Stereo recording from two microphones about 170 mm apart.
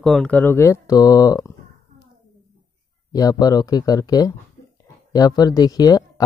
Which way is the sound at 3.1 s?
20° left (ahead or behind).